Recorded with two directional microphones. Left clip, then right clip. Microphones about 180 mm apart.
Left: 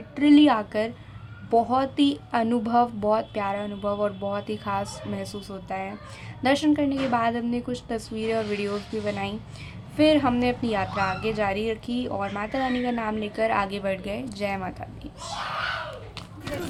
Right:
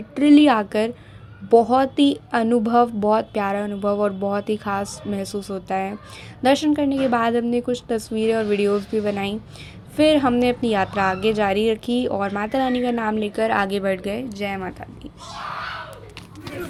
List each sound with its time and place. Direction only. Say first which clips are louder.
0.2 s a woman's voice: right 4 dB; 30° right (ahead or behind)